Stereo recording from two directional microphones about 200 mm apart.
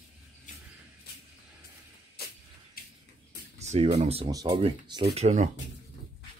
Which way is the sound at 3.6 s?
30° right (ahead or behind).